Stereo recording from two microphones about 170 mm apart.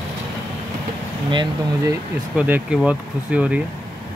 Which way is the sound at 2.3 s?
10° right (ahead or behind).